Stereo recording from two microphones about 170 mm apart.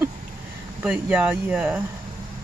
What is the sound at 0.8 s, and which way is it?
Speech, 5° right (ahead or behind).